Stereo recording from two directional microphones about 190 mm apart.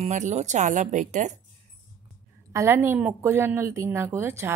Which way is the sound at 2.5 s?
10° right (ahead or behind).